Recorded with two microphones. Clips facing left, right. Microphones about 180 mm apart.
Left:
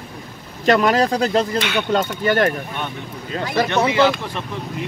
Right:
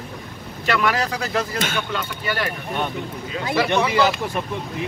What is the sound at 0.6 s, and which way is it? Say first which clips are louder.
Speech: left 6 dB; 35° left (ahead or behind).